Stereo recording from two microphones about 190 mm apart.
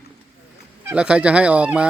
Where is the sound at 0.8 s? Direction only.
5° right (ahead or behind).